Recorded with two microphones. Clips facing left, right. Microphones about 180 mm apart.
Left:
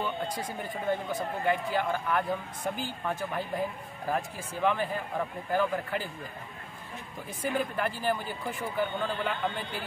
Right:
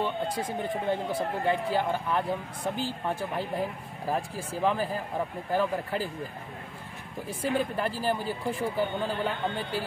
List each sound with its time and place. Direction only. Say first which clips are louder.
0.0 s speech: right 3 dB; 25° right (ahead or behind)
7.2 s speech: right 3 dB; 30° right (ahead or behind)